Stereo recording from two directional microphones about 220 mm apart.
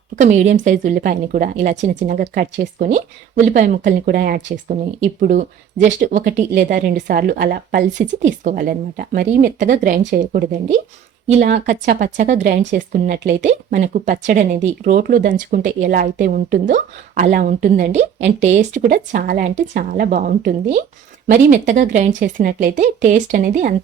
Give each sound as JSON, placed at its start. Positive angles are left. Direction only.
{"t": 0.2, "sound": "speech", "side_deg": -35}
{"t": 6.5, "sound": "speech", "side_deg": -45}
{"t": 18.7, "sound": "speech", "side_deg": -45}